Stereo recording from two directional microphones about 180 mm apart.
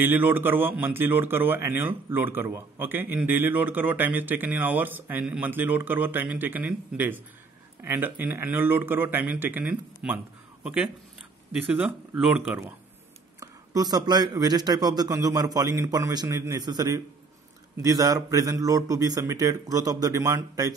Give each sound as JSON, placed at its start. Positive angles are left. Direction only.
{"t": 0.0, "sound": "a man's voice", "side_deg": -10}